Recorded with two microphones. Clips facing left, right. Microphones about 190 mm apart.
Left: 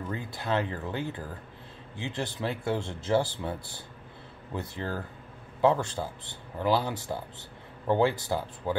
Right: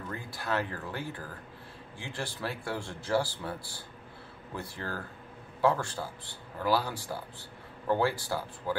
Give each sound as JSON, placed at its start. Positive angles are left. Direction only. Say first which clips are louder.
{"t": 0.1, "sound": "speech", "louder": "left 3 dB", "side_deg": 20}